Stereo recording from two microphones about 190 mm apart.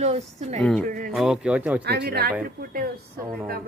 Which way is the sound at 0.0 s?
35° right (ahead or behind).